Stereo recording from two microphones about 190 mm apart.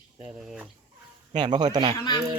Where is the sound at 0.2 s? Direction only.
5° right (ahead or behind).